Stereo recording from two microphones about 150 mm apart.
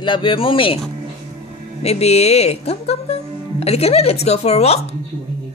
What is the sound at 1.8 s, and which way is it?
Speech, 45° left (ahead or behind).